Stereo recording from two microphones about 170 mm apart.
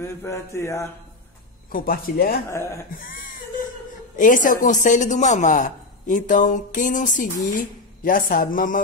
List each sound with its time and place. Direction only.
0.0 s mantra: 15° left (ahead or behind)
1.7 s speech: 55° left (ahead or behind)
2.5 s mantra: 15° left (ahead or behind)
2.9 s a man's voice: 55° left (ahead or behind)